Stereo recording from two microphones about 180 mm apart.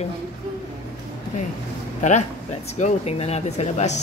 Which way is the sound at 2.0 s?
40° left (ahead or behind).